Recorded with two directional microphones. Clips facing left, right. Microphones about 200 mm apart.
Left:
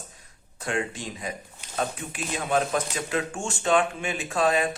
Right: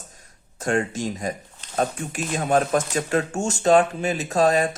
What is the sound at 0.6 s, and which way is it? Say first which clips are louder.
Speech: right 6 dB; 45° right (ahead or behind).